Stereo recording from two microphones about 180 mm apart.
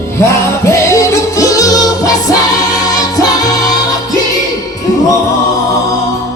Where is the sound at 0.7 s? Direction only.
15° left (ahead or behind).